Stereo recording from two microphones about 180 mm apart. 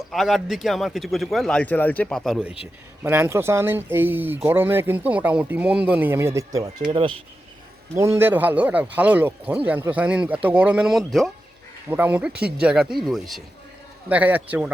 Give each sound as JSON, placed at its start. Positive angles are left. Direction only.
{"t": 0.1, "sound": "speech", "side_deg": 0}
{"t": 7.9, "sound": "speech", "side_deg": -15}
{"t": 12.3, "sound": "speech", "side_deg": -60}
{"t": 12.5, "sound": "speech", "side_deg": -5}